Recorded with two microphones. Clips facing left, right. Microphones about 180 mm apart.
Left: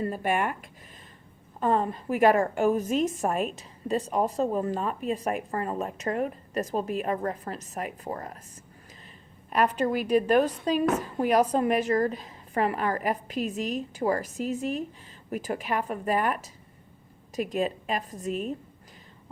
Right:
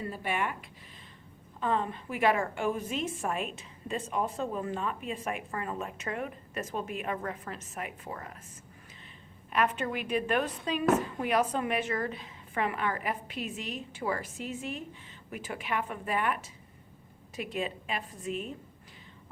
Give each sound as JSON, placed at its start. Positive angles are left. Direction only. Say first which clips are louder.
{"t": 0.0, "sound": "a woman's voice", "louder": "left 6 dB", "side_deg": 45}
{"t": 9.5, "sound": "a woman's voice", "louder": "left 5 dB", "side_deg": 40}